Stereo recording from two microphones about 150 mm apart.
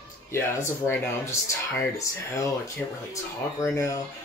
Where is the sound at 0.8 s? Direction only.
15° left (ahead or behind).